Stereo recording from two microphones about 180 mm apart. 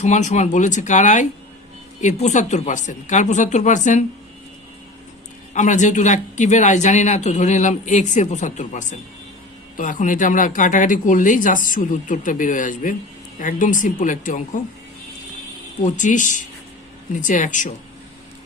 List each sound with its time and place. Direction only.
0.0 s speech: 40° left (ahead or behind)
5.5 s speech: 40° left (ahead or behind)
15.8 s speech: 45° left (ahead or behind)